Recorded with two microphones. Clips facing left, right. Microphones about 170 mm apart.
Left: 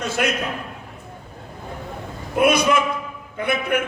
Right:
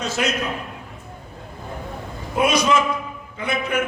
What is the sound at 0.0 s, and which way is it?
Speech, 55° left (ahead or behind).